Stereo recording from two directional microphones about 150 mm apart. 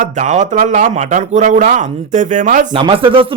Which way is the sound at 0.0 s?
55° right (ahead or behind).